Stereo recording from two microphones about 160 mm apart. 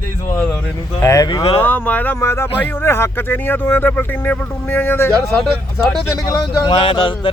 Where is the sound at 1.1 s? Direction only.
25° left (ahead or behind).